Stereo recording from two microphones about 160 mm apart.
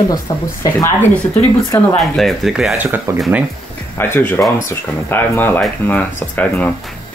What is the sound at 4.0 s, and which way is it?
Speech, 15° left (ahead or behind).